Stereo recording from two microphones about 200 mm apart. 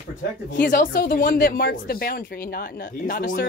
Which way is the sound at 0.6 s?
45° left (ahead or behind).